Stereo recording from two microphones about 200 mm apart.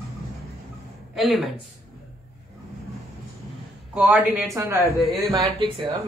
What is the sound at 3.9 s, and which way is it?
Speech, 5° right (ahead or behind).